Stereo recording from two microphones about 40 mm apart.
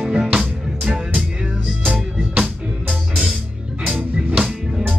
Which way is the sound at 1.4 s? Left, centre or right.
Right.